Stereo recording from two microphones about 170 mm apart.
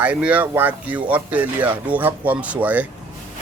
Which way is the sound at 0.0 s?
10° right (ahead or behind).